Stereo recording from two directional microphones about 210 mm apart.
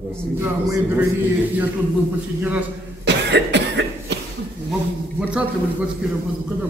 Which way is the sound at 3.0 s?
55° right (ahead or behind).